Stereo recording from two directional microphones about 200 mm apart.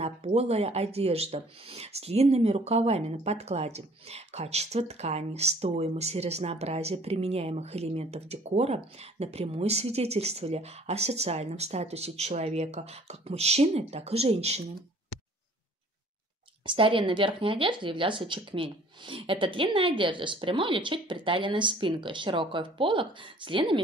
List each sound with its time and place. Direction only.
0.0 s speech: 30° right (ahead or behind)
16.6 s speech: 25° right (ahead or behind)